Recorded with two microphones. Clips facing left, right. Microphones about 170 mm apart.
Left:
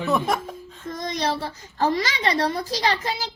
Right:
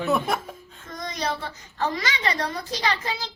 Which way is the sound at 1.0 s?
30° left (ahead or behind).